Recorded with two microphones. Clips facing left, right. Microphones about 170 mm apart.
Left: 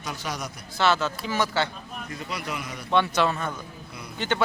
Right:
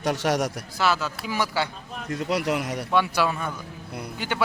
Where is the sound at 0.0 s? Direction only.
75° right (ahead or behind).